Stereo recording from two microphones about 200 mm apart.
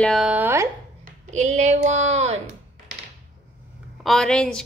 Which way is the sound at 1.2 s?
35° right (ahead or behind).